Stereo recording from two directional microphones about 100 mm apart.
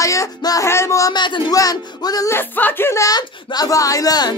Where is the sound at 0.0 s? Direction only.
35° left (ahead or behind).